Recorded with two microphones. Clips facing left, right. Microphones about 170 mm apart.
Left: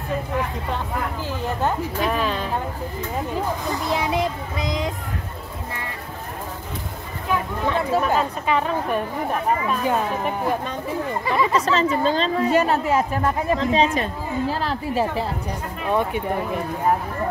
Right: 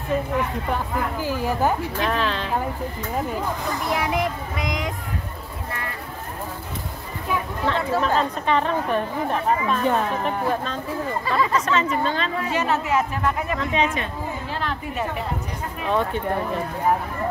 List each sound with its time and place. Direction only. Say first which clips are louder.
1.2 s speech: right 3 dB; 10° right (ahead or behind)
2.0 s speech: even; 10° left (ahead or behind)
3.9 s a child's voice: left 1 dB; 30° left (ahead or behind)
7.6 s speech: left 1 dB; 15° left (ahead or behind)
11.5 s speech: left 2 dB; 35° left (ahead or behind)
15.9 s speech: left 1 dB; 15° left (ahead or behind)